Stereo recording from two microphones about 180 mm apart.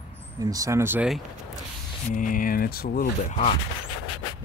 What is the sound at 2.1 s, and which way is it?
Speech, 50° left (ahead or behind).